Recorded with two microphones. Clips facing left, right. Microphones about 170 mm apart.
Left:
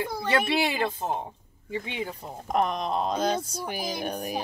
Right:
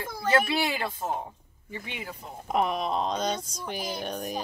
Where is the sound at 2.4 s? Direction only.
5° right (ahead or behind).